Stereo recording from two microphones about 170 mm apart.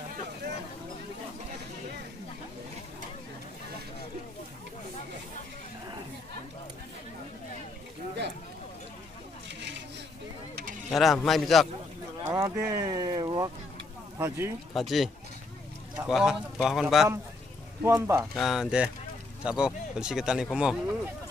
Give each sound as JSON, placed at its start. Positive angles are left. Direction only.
{"t": 9.5, "sound": "a sound", "side_deg": -90}
{"t": 11.0, "sound": "speech", "side_deg": 0}
{"t": 12.3, "sound": "a sound", "side_deg": -20}
{"t": 12.5, "sound": "speech", "side_deg": -15}
{"t": 14.7, "sound": "speech", "side_deg": 0}
{"t": 16.1, "sound": "speech", "side_deg": -5}
{"t": 17.8, "sound": "speech", "side_deg": -15}
{"t": 18.3, "sound": "speech", "side_deg": 0}